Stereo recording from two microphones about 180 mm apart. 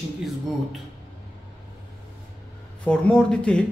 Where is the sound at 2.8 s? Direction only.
5° left (ahead or behind).